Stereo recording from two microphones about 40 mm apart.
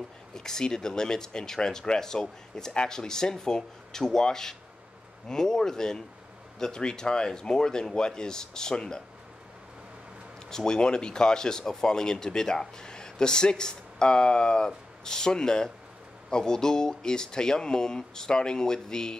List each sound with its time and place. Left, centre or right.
0.3 s speech: centre
10.5 s speech: centre